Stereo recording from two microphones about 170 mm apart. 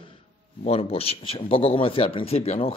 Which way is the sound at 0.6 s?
35° left (ahead or behind).